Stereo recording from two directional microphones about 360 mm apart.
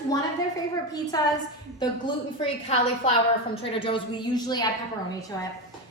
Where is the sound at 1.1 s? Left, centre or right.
Centre.